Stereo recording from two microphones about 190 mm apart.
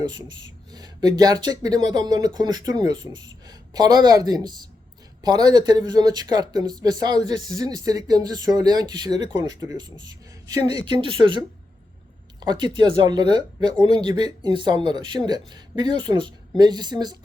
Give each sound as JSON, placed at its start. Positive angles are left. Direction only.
{"t": 0.0, "sound": "speech", "side_deg": -25}